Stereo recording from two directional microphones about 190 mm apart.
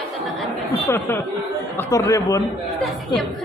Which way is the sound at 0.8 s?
10° left (ahead or behind).